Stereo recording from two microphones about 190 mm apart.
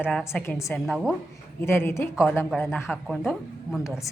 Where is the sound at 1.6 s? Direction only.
15° left (ahead or behind).